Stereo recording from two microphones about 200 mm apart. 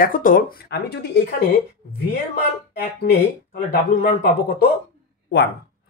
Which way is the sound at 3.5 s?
50° left (ahead or behind).